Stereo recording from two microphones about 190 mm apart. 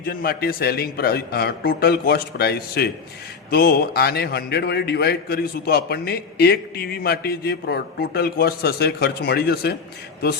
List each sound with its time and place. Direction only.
0.0 s a man's voice: 50° left (ahead or behind)